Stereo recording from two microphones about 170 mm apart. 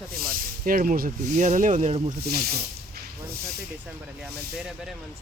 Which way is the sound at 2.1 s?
70° right (ahead or behind).